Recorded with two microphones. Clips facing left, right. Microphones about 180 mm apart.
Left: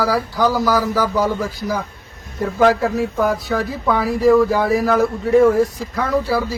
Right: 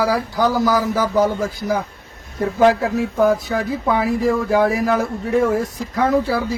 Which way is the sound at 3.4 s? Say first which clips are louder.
Even; 20° right (ahead or behind).